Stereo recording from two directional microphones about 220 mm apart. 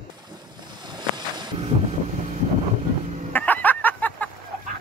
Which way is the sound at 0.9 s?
20° right (ahead or behind).